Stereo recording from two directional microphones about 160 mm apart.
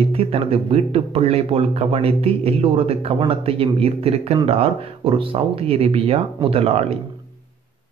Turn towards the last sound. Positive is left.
turn(degrees=-40)  # may be behind; listen again after turning